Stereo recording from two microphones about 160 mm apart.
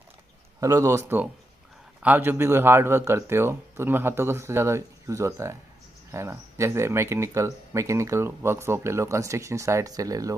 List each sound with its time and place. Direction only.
0.6 s a man's voice: 20° right (ahead or behind)